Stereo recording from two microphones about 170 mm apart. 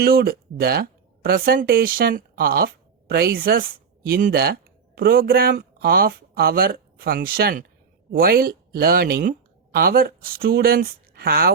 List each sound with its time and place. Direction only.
0.0 s speech: 60° right (ahead or behind)